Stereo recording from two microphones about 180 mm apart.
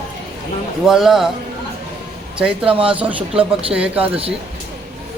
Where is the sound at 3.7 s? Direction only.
10° right (ahead or behind).